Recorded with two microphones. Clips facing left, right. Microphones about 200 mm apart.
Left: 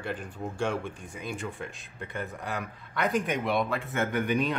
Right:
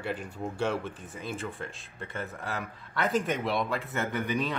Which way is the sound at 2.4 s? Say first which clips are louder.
Left 1 dB; centre (ahead or behind).